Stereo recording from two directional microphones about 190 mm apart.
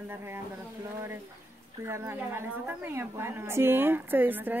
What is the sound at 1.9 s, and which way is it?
A woman's voice, 15° right (ahead or behind).